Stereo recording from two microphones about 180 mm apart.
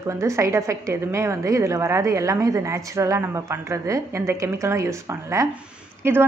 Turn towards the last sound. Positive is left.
turn(degrees=-15)  # may be behind; listen again after turning